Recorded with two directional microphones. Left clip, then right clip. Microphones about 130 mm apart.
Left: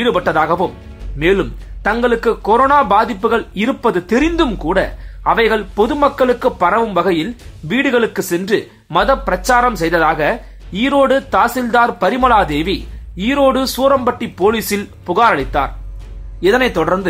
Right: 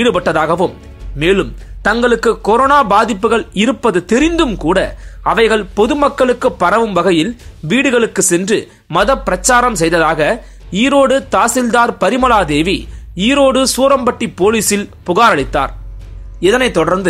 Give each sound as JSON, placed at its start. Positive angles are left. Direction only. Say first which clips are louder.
{"t": 0.0, "sound": "a man's voice", "louder": "right 2 dB", "side_deg": -35}